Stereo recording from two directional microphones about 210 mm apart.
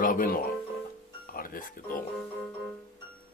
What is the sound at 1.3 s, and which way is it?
Speech, 45° left (ahead or behind).